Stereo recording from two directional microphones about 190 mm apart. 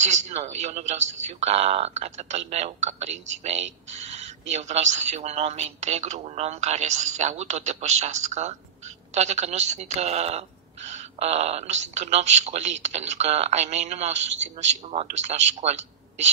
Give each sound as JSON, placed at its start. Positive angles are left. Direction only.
{"t": 0.0, "sound": "a man's voice", "side_deg": -35}